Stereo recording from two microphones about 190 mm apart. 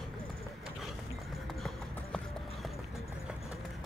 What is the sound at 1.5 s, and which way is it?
Clip-clop, centre (ahead or behind).